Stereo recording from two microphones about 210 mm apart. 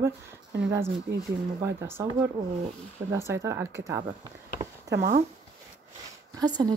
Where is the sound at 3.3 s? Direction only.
15° right (ahead or behind).